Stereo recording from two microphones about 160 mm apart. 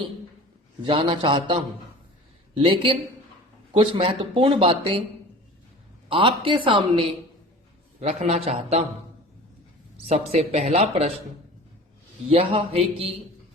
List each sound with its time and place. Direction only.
0.9 s speech: 35° right (ahead or behind)
2.6 s speech: 30° right (ahead or behind)
6.1 s speech: 35° right (ahead or behind)
7.9 s speech: 45° right (ahead or behind)
10.1 s speech: 45° right (ahead or behind)
12.3 s speech: 35° right (ahead or behind)